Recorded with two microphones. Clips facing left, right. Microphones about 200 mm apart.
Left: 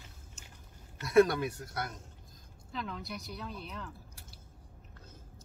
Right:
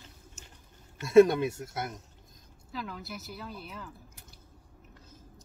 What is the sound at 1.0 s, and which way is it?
Speech, 25° right (ahead or behind).